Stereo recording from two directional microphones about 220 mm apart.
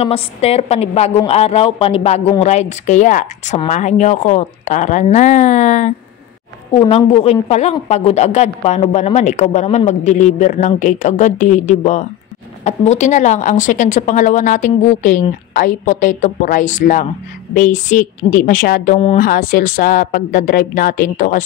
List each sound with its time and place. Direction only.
0.0 s a woman's voice: 25° left (ahead or behind)